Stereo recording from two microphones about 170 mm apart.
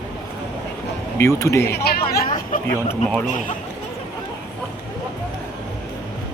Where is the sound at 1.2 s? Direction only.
15° left (ahead or behind).